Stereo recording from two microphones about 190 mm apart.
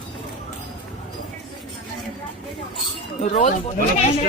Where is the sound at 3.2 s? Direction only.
40° left (ahead or behind).